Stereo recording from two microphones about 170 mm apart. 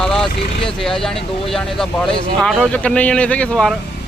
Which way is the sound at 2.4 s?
5° left (ahead or behind).